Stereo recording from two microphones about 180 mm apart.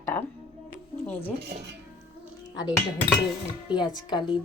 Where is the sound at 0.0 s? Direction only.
10° left (ahead or behind).